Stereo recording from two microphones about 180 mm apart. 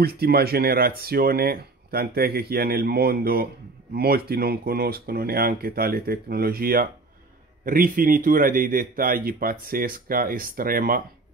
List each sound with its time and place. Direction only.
0.0 s a man's voice: 60° right (ahead or behind)